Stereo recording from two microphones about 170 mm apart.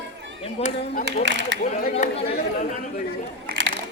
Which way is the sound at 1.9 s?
35° left (ahead or behind).